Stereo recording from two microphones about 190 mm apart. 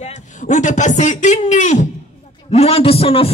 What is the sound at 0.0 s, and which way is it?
A man's voice, 40° left (ahead or behind).